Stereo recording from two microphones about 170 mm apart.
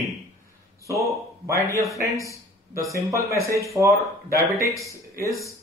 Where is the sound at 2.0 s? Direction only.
20° right (ahead or behind).